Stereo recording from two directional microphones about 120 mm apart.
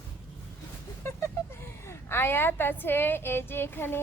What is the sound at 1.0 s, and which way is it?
A woman's voice, 20° left (ahead or behind).